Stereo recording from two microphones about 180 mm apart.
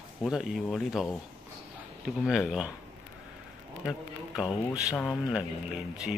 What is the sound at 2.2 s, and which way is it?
Speech, centre (ahead or behind).